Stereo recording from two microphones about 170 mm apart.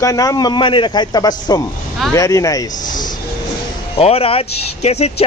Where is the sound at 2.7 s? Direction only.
50° left (ahead or behind).